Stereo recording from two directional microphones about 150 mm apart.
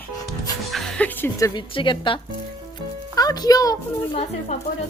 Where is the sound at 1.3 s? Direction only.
20° left (ahead or behind).